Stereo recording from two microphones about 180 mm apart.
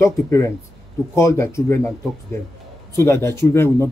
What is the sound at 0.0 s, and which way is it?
Speech, 15° left (ahead or behind).